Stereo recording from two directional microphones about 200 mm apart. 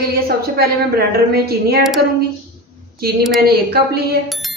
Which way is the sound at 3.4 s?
50° right (ahead or behind).